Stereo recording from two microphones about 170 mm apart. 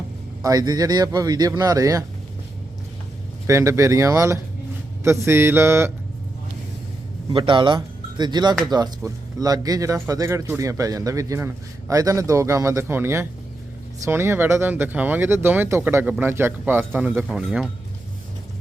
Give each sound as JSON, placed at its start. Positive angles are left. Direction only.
{"t": 0.4, "sound": "speech", "side_deg": -20}
{"t": 3.4, "sound": "speech", "side_deg": -15}
{"t": 7.3, "sound": "speech", "side_deg": -30}